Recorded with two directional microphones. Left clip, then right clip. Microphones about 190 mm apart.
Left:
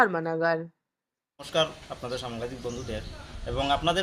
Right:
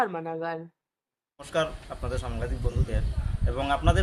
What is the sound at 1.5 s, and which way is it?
Speech, centre (ahead or behind).